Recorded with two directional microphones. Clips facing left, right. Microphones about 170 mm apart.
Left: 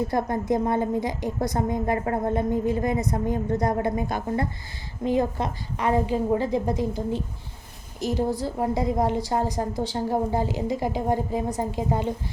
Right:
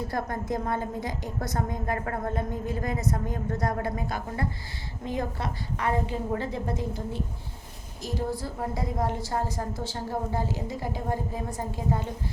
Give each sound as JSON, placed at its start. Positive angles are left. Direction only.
{"t": 0.1, "sound": "a woman's voice", "side_deg": 20}
{"t": 8.3, "sound": "a woman's voice", "side_deg": 20}